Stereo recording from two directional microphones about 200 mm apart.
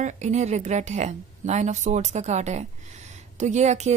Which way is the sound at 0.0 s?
35° right (ahead or behind).